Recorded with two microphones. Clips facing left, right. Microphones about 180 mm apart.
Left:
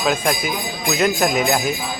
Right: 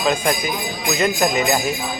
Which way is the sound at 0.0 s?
Centre (ahead or behind).